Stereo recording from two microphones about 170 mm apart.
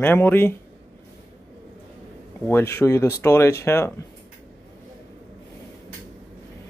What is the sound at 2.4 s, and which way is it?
Speech, 15° left (ahead or behind).